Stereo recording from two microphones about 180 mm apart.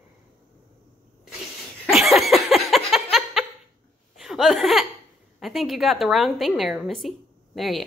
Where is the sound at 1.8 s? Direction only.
Centre (ahead or behind).